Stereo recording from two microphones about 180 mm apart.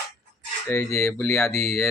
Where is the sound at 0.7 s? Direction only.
15° left (ahead or behind).